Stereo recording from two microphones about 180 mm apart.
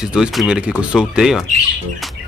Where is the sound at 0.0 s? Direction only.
5° right (ahead or behind).